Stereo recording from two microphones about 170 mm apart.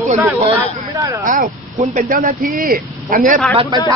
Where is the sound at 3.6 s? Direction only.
20° right (ahead or behind).